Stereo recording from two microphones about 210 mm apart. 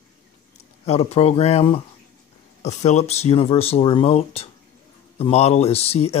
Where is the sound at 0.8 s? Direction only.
30° left (ahead or behind).